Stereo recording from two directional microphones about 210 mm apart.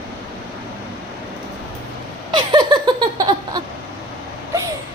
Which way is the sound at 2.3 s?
20° right (ahead or behind).